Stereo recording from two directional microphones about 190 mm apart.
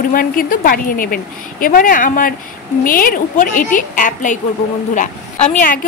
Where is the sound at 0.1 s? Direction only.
50° left (ahead or behind).